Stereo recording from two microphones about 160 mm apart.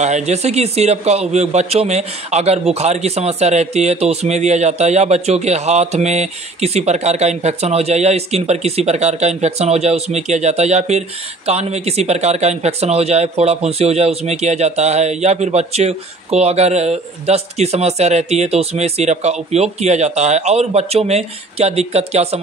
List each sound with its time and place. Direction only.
0.0 s a man's voice: 45° right (ahead or behind)